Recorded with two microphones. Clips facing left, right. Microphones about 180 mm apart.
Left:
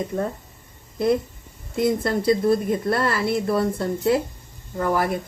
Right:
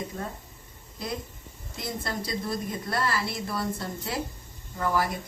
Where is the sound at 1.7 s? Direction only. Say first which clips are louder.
Left 12 dB; 55° left (ahead or behind).